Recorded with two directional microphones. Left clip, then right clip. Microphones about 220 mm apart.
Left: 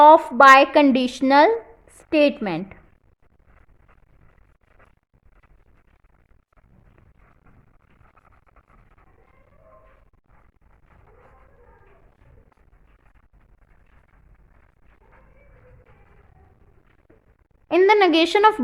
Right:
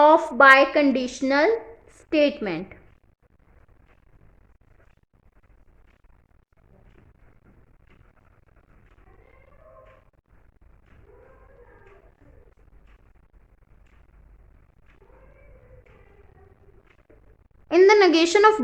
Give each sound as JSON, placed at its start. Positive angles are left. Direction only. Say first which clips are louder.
{"t": 0.0, "sound": "a woman's voice", "louder": "left 4 dB", "side_deg": 15}
{"t": 17.7, "sound": "a woman's voice", "louder": "even", "side_deg": 15}